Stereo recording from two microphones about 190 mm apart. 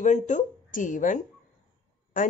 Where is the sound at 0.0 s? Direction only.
40° left (ahead or behind).